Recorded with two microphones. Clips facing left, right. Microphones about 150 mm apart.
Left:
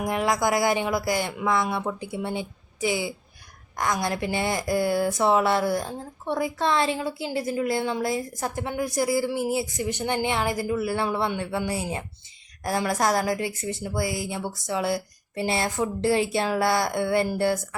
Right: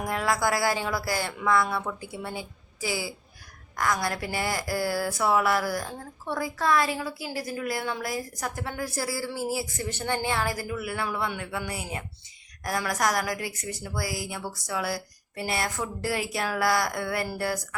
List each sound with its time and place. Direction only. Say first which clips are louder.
0.0 s a woman's voice: left 3 dB; 20° left (ahead or behind)